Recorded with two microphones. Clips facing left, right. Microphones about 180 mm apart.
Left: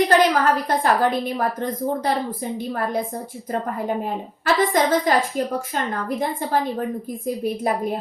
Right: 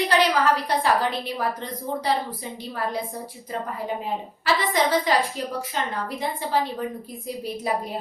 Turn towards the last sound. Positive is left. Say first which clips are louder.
# left 6 dB
turn(degrees=50)  # may be behind; listen again after turning